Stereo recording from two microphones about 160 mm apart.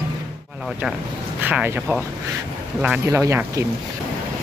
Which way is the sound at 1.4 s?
10° right (ahead or behind).